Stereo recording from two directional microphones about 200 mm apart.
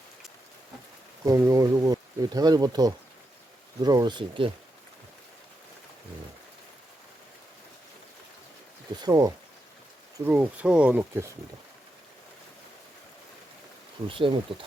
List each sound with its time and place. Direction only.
1.2 s speech: 15° right (ahead or behind)
9.0 s speech: 20° right (ahead or behind)
10.2 s speech: 10° right (ahead or behind)
14.1 s speech: 25° right (ahead or behind)